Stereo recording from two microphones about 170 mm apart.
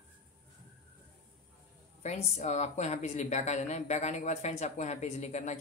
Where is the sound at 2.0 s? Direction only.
40° left (ahead or behind).